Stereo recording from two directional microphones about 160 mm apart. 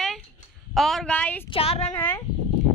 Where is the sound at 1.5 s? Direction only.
40° left (ahead or behind).